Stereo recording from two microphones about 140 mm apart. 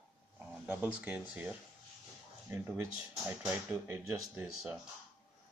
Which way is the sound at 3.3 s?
10° right (ahead or behind).